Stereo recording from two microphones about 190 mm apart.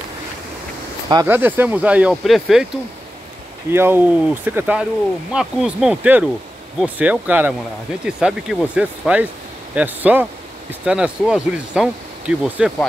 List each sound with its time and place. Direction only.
1.0 s speech: 15° right (ahead or behind)
3.7 s speech: 10° right (ahead or behind)